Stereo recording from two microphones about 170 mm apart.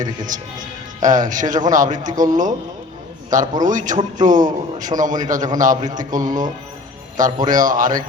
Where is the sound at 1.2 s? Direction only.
50° right (ahead or behind).